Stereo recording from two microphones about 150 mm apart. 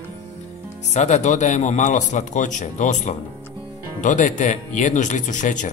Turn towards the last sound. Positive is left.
turn(degrees=55)  # may be behind; listen again after turning